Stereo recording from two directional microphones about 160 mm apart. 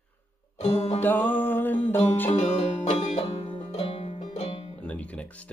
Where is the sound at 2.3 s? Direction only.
40° left (ahead or behind).